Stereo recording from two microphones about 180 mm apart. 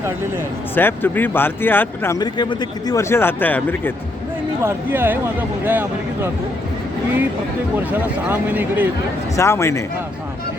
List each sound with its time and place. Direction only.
0.8 s speech: 10° left (ahead or behind)
4.6 s speech: 10° right (ahead or behind)
7.9 s speech: 10° right (ahead or behind)
9.3 s speech: 15° left (ahead or behind)